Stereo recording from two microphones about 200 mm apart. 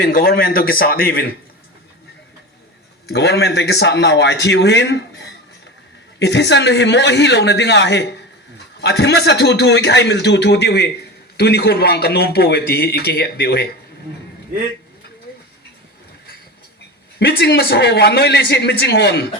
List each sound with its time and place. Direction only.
0.0 s a man's voice: 45° left (ahead or behind)
3.1 s a man's voice: 55° left (ahead or behind)
17.2 s a man's voice: 55° left (ahead or behind)